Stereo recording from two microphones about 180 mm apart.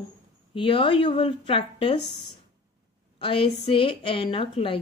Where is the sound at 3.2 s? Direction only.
30° left (ahead or behind).